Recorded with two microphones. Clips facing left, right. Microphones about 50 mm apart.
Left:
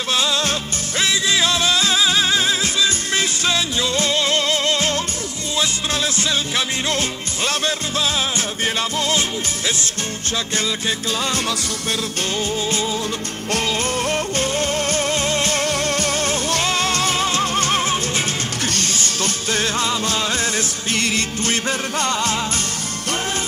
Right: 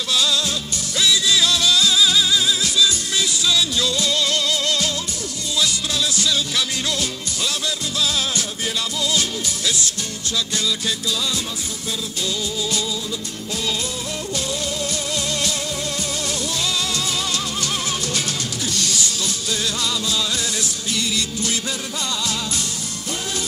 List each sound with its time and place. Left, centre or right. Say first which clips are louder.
0.1 s music: left 1 dB; left
11.1 s music: left 2 dB; left
14.1 s music: left 5 dB; left